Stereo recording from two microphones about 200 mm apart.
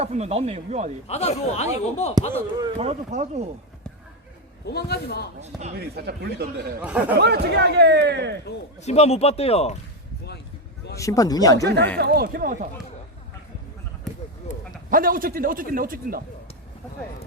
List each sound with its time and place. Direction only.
0.0 s a man's voice: 30° right (ahead or behind)
1.0 s speech: 30° left (ahead or behind)
2.3 s a man's voice: 20° right (ahead or behind)
4.6 s a man's voice: 55° left (ahead or behind)
5.4 s a man's voice: 35° right (ahead or behind)
5.7 s a man's voice: 55° right (ahead or behind)
6.8 s speech: 5° right (ahead or behind)
7.2 s a man's voice: 55° right (ahead or behind)
8.8 s speech: 30° left (ahead or behind)
10.9 s speech: 15° left (ahead or behind)
11.5 s a man's voice: 55° right (ahead or behind)
14.1 s basketball bounce: centre (ahead or behind)
14.8 s a man's voice: 45° right (ahead or behind)